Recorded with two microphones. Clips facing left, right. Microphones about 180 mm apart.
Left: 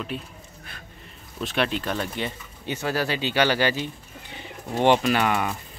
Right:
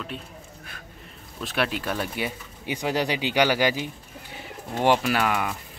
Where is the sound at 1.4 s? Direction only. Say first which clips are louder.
Left 2 dB; 5° right (ahead or behind).